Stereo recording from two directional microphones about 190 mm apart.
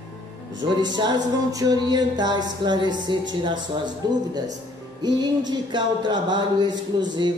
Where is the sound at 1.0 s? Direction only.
20° right (ahead or behind).